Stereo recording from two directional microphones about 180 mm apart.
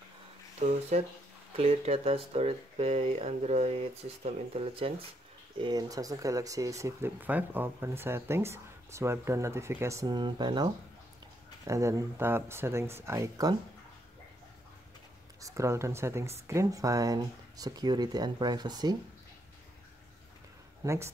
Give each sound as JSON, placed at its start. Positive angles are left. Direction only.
{"t": 0.6, "sound": "speech", "side_deg": -35}
{"t": 15.4, "sound": "speech", "side_deg": -15}
{"t": 20.8, "sound": "speech", "side_deg": -15}